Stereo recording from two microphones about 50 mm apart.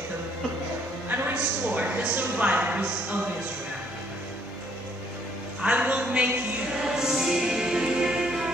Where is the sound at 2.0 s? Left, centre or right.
Right.